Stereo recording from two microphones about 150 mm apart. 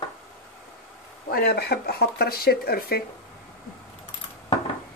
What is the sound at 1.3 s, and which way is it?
Speech, 90° left.